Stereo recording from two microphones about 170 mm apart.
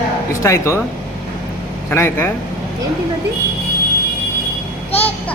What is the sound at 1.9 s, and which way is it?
Speech, 15° left (ahead or behind).